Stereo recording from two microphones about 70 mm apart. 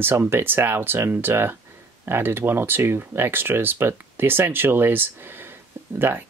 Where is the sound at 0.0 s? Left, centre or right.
Right.